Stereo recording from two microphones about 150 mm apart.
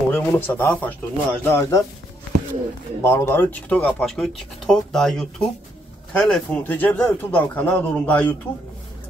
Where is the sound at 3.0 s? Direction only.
15° left (ahead or behind).